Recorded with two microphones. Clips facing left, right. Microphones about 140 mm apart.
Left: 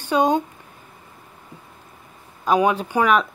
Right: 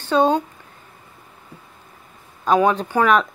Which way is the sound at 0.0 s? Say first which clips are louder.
Right 2 dB; 15° left (ahead or behind).